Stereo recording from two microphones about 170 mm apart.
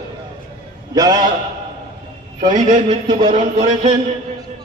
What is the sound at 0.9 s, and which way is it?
Speech, 25° right (ahead or behind).